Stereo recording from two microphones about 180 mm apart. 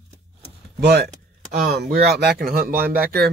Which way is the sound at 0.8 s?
65° right (ahead or behind).